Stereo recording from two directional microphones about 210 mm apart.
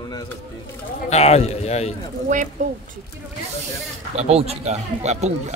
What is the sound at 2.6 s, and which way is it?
Speech, 35° right (ahead or behind).